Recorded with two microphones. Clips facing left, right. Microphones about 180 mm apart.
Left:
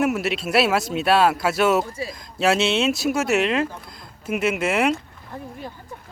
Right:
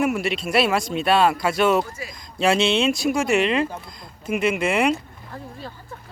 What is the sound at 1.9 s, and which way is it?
Speech, 30° left (ahead or behind).